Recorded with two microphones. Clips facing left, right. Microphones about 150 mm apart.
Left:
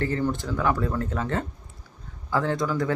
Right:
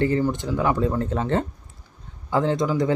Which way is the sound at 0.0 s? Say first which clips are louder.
Right 4 dB; 15° right (ahead or behind).